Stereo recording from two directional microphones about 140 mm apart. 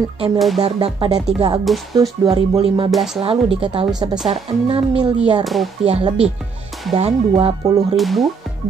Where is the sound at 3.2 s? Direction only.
40° right (ahead or behind).